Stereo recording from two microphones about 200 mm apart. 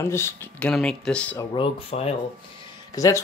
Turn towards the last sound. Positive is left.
turn(degrees=15)  # may be behind; listen again after turning